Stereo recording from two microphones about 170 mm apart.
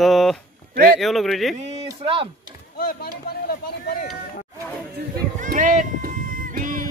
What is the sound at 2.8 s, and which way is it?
Speech, 60° left (ahead or behind).